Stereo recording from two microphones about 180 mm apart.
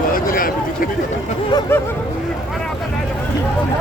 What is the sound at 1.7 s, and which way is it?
Hubbub, 15° left (ahead or behind).